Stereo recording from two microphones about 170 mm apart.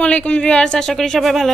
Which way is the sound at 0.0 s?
5° left (ahead or behind).